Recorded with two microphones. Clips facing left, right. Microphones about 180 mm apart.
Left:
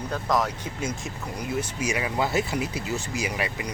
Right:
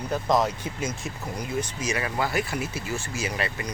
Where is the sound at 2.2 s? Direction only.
20° left (ahead or behind).